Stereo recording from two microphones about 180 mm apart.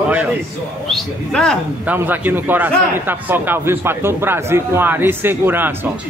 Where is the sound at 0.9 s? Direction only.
5° left (ahead or behind).